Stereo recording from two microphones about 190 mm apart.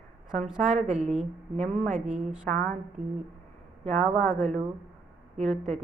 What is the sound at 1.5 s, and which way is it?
Speech, 35° right (ahead or behind).